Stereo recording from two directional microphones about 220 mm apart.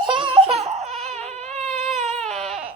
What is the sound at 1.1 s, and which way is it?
Baby cry, 30° right (ahead or behind).